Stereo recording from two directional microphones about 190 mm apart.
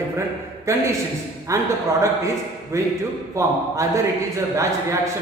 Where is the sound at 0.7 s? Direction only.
15° right (ahead or behind).